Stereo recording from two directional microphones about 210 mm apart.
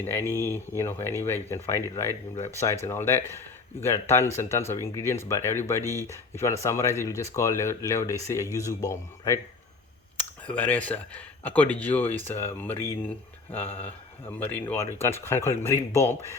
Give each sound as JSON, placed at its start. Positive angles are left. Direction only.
{"t": 0.0, "sound": "speech", "side_deg": 10}
{"t": 10.4, "sound": "speech", "side_deg": 10}